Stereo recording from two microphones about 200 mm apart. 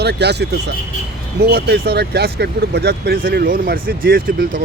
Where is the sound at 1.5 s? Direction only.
50° right (ahead or behind).